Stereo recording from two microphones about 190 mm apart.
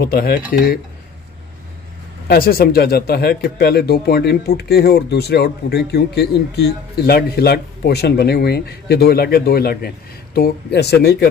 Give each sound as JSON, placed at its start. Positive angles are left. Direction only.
{"t": 0.0, "sound": "speech", "side_deg": 55}
{"t": 2.2, "sound": "speech", "side_deg": 50}